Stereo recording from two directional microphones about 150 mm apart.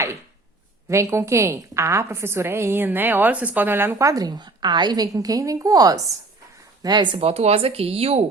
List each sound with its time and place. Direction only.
0.9 s a woman's voice: 20° right (ahead or behind); by 8.2 s 40° right (ahead or behind)